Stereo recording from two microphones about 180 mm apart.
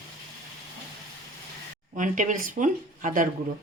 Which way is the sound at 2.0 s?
45° right (ahead or behind).